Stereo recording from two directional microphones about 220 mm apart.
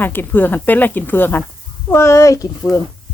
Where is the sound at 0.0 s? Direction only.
10° left (ahead or behind).